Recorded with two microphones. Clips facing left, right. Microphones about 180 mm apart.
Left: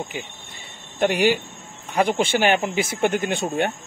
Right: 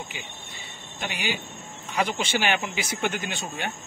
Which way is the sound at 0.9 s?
55° left (ahead or behind).